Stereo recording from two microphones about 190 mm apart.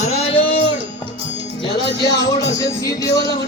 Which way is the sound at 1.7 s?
20° left (ahead or behind).